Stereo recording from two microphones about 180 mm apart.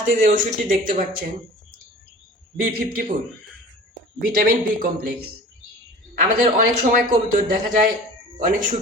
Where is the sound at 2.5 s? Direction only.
50° right (ahead or behind).